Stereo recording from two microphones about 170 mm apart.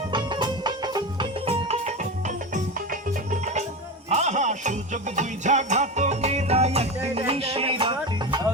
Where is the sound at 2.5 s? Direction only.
50° right (ahead or behind).